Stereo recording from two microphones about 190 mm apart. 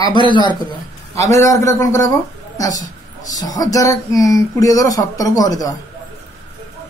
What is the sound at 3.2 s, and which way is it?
Speech, 20° left (ahead or behind).